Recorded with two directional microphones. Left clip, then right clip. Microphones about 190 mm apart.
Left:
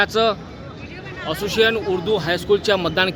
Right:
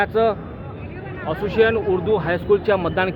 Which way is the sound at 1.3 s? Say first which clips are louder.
Even; 90° left.